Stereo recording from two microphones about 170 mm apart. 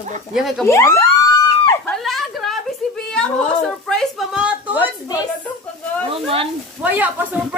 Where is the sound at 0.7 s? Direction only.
15° left (ahead or behind).